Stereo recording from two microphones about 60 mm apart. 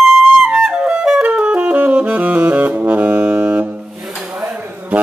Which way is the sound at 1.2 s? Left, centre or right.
Centre.